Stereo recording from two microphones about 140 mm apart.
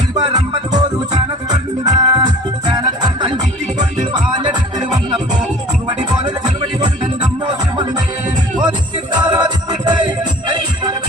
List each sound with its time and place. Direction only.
0.1 s music: 25° right (ahead or behind)
6.2 s music: 30° right (ahead or behind)
9.2 s music: 30° right (ahead or behind)